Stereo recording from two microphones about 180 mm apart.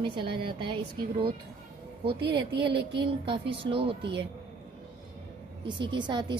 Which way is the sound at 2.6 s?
65° right (ahead or behind).